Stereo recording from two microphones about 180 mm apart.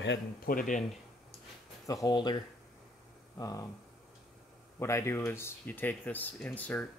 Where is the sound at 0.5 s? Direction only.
50° left (ahead or behind).